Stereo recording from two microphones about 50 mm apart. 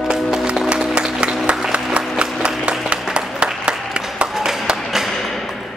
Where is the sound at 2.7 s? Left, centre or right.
Right.